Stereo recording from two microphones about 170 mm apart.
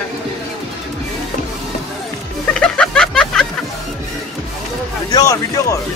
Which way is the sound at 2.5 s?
5° left (ahead or behind).